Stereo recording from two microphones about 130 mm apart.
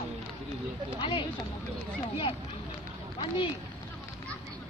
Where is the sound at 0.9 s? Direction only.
40° left (ahead or behind).